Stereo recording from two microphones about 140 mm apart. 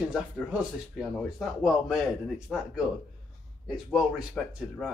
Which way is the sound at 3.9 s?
Centre (ahead or behind).